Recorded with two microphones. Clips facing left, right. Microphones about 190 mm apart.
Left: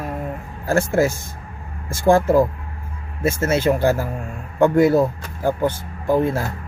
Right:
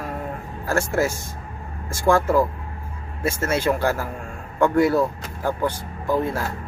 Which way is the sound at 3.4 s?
25° left (ahead or behind).